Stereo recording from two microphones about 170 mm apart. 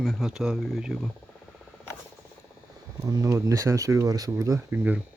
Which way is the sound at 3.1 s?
20° right (ahead or behind).